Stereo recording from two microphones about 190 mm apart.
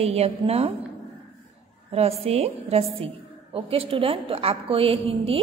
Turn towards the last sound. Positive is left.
turn(degrees=-30)  # may be behind; listen again after turning